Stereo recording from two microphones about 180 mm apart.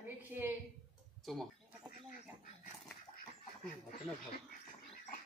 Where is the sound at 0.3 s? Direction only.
10° right (ahead or behind).